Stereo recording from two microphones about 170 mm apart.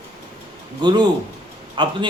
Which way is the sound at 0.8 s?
25° right (ahead or behind).